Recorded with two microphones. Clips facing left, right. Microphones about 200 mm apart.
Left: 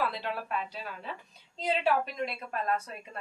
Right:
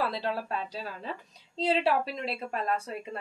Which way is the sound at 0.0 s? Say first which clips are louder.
Right 2 dB; 35° right (ahead or behind).